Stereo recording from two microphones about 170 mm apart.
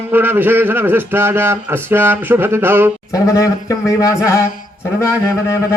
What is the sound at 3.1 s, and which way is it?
Speech, 20° left (ahead or behind).